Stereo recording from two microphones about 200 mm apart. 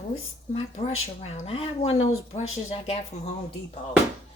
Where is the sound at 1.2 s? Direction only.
30° left (ahead or behind).